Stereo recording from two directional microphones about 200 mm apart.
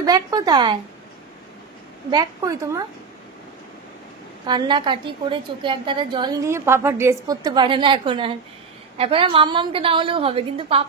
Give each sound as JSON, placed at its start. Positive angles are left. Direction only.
{"t": 0.0, "sound": "a woman's voice", "side_deg": -20}
{"t": 2.0, "sound": "a woman's voice", "side_deg": -20}
{"t": 4.5, "sound": "a woman's voice", "side_deg": -20}